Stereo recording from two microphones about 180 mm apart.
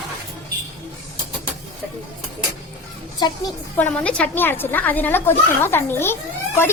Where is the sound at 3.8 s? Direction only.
5° left (ahead or behind).